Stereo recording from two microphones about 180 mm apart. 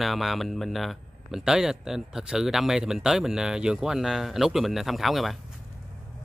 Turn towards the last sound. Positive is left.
turn(degrees=0)  # may be behind; listen again after turning